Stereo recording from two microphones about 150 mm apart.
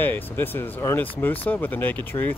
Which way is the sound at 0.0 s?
15° left (ahead or behind).